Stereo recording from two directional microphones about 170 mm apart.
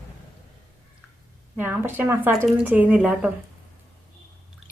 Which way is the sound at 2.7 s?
10° right (ahead or behind).